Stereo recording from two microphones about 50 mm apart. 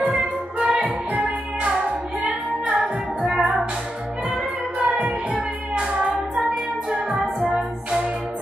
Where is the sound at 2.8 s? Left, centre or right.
Centre.